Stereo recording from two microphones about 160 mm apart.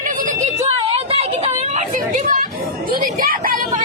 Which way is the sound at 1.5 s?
45° right (ahead or behind).